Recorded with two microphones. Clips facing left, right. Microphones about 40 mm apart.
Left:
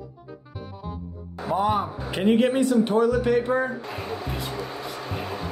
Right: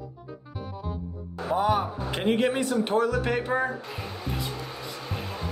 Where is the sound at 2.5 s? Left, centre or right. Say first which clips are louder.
Left 4 dB; right.